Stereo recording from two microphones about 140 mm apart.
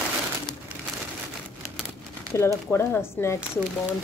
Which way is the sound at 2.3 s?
15° left (ahead or behind).